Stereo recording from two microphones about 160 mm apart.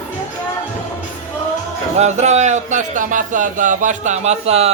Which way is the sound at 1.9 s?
45° right (ahead or behind).